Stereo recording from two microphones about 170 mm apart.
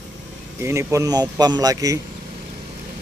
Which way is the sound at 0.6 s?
15° right (ahead or behind).